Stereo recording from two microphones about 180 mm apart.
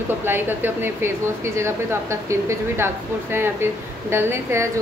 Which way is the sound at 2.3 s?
15° right (ahead or behind).